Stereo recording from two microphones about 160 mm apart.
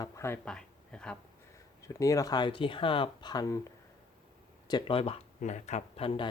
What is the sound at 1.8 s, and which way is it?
Speech, 20° left (ahead or behind).